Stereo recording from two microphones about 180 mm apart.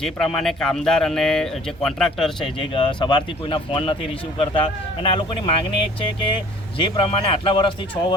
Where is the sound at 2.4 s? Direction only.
30° left (ahead or behind).